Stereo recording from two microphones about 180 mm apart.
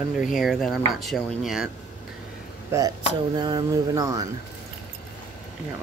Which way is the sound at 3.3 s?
20° right (ahead or behind).